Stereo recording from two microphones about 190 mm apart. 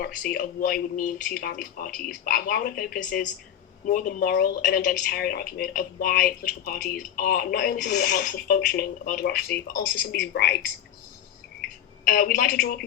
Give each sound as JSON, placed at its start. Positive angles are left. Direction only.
{"t": 0.0, "sound": "speech", "side_deg": 50}
{"t": 12.0, "sound": "speech", "side_deg": 50}